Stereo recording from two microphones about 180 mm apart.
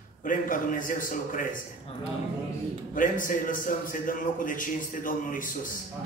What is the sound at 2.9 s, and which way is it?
A man's voice, 50° left (ahead or behind).